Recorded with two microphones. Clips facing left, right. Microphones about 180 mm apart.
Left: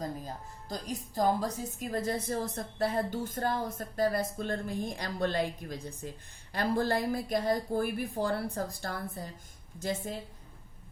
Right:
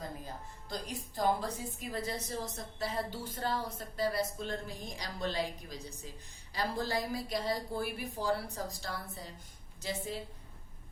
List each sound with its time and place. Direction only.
0.7 s a woman's voice: 40° left (ahead or behind)